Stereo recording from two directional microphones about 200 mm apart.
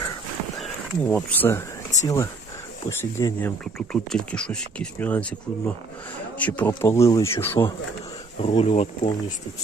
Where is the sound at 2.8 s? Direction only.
15° left (ahead or behind).